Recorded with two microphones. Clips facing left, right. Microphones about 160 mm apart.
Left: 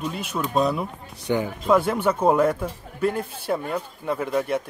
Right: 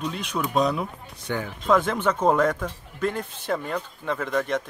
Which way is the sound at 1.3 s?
15° left (ahead or behind).